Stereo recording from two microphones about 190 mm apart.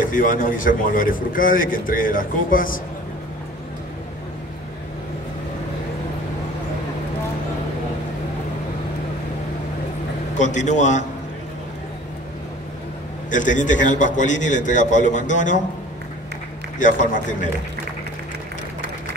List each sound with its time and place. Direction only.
0.1 s speech: 45° left (ahead or behind)
10.3 s a man's voice: 40° left (ahead or behind)
13.3 s a man's voice: 40° left (ahead or behind)
16.7 s speech: 40° left (ahead or behind)